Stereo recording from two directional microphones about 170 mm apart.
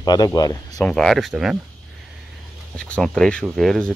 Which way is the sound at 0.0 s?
25° left (ahead or behind).